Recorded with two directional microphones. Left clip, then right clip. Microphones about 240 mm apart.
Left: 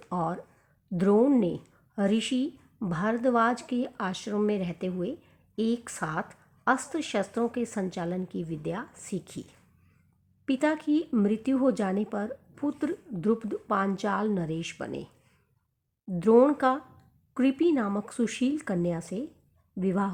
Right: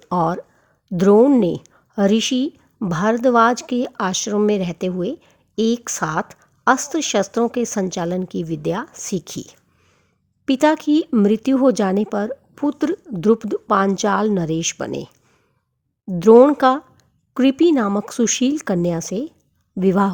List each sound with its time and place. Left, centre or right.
0.1 s a woman's voice: right
16.1 s a woman's voice: right